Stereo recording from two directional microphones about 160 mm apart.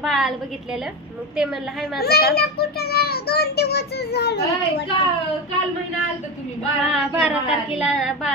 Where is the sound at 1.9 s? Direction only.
75° left (ahead or behind).